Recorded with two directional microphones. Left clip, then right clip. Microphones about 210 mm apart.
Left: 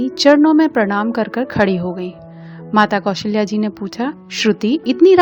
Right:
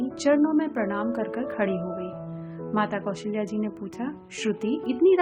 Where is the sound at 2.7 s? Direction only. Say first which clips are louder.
Left 13 dB; 50° left (ahead or behind).